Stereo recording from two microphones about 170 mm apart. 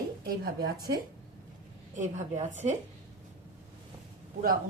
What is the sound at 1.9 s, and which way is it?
Speech, 45° right (ahead or behind).